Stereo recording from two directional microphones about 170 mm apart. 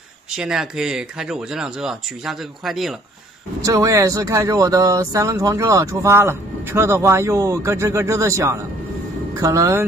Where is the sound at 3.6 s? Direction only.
20° right (ahead or behind).